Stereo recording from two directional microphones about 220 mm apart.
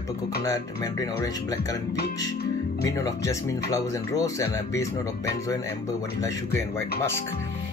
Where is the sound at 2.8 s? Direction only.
15° left (ahead or behind).